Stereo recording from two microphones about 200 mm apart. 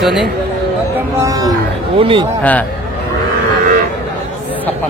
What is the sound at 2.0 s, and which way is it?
Speech, 25° right (ahead or behind).